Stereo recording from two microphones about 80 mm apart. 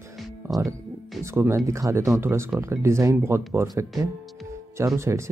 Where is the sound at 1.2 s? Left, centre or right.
Right.